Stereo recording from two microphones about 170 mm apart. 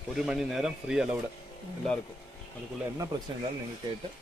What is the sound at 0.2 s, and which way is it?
Speech, 5° right (ahead or behind).